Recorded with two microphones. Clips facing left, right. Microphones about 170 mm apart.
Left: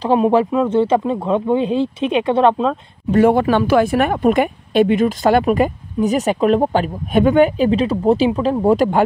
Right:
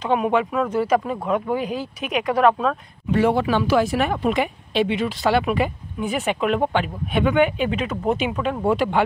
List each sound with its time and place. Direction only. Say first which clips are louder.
0.0 s speech: left 6 dB; 35° left (ahead or behind)
3.1 s speech: left 6 dB; 50° left (ahead or behind)